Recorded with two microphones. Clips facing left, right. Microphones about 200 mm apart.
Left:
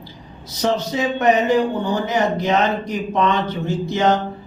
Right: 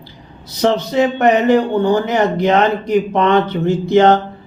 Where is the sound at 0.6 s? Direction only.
60° right (ahead or behind).